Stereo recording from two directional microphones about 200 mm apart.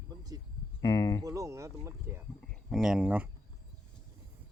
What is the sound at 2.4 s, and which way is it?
Speech, 5° left (ahead or behind).